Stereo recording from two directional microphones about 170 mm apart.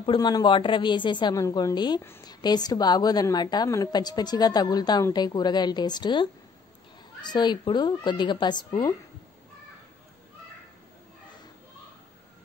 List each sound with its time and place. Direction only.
0.0 s a woman's voice: 25° left (ahead or behind)